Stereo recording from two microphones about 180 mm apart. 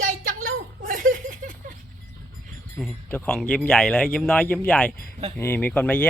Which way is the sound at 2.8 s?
5° left (ahead or behind).